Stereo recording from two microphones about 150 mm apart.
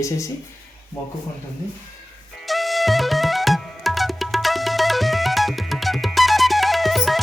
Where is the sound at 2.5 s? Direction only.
Centre (ahead or behind).